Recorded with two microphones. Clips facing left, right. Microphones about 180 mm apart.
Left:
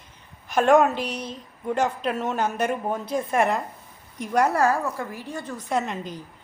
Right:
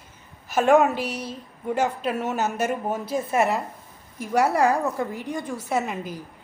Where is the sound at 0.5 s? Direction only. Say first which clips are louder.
Even; 5° right (ahead or behind).